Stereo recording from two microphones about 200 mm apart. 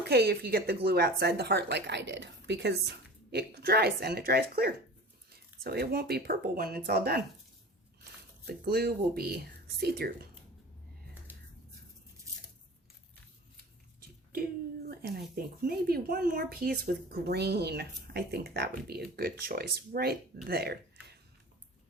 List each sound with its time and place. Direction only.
0.0 s speech: 50° right (ahead or behind)
8.4 s speech: 50° right (ahead or behind)
11.3 s a sound: 10° right (ahead or behind)
14.8 s speech: 50° right (ahead or behind)